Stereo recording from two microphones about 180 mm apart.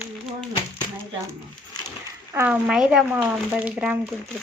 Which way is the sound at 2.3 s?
10° right (ahead or behind).